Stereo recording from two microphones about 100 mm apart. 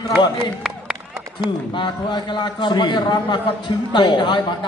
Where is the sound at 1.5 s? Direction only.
50° left (ahead or behind).